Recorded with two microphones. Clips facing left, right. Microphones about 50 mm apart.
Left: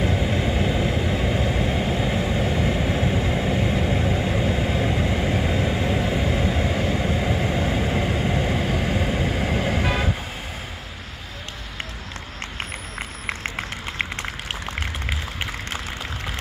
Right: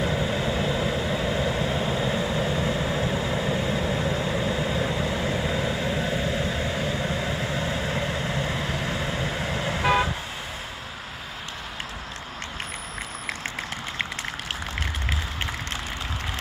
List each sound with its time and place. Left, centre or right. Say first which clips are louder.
0.2 s vehicle: left 2 dB; left